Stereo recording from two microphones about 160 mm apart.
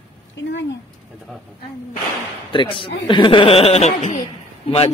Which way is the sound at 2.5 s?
30° left (ahead or behind).